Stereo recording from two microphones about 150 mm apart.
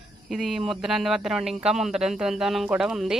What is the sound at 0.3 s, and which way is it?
Speech, 5° right (ahead or behind).